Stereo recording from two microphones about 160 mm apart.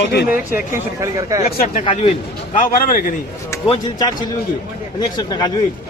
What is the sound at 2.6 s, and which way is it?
Speech, 60° left (ahead or behind).